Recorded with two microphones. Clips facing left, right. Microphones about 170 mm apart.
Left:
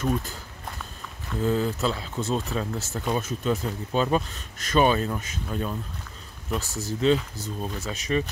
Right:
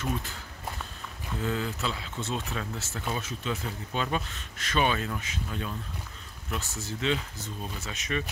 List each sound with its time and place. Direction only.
1.4 s speech: 35° left (ahead or behind)